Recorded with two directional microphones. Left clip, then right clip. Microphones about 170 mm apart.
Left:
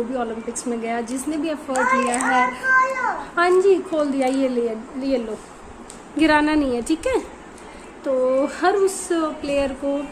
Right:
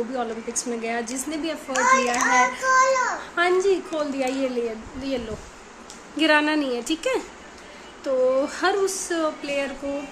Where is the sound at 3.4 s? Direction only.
10° left (ahead or behind).